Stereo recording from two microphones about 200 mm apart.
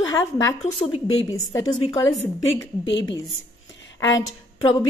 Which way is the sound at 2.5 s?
65° left (ahead or behind).